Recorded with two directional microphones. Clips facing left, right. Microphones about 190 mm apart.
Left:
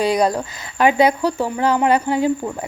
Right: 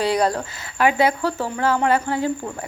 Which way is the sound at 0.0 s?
15° left (ahead or behind).